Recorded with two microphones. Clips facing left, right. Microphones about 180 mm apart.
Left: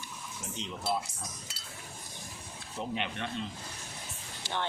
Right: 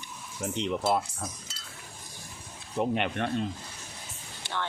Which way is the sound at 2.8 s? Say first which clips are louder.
Right 8 dB; 55° right (ahead or behind).